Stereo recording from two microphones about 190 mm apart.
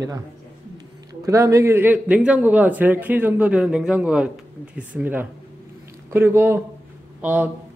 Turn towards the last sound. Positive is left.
turn(degrees=-10)  # may be behind; listen again after turning